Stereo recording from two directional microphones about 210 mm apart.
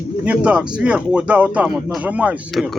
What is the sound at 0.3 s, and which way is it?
Speech, 5° right (ahead or behind).